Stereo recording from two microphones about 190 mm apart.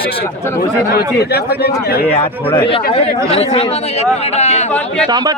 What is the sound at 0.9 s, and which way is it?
Speech, 55° left (ahead or behind).